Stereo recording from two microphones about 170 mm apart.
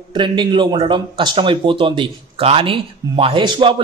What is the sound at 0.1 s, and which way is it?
Speech, 25° right (ahead or behind).